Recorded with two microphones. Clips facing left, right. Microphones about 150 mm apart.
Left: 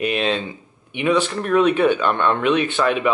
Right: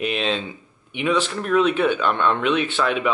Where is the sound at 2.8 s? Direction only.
20° left (ahead or behind).